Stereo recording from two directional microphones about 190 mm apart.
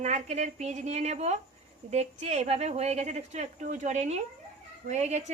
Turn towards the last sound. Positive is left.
turn(degrees=-35)  # may be behind; listen again after turning